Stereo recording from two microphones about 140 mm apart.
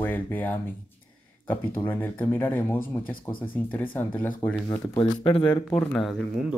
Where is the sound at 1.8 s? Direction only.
15° left (ahead or behind).